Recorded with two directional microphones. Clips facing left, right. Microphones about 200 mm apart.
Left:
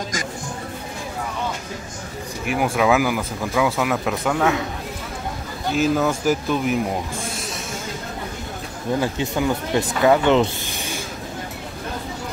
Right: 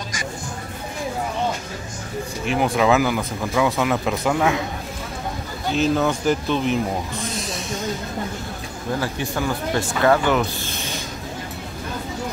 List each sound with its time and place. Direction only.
2.4 s speech: 10° left (ahead or behind)
5.7 s speech: 5° left (ahead or behind)
9.0 s speech: 20° left (ahead or behind)
10.7 s a sound: 15° left (ahead or behind)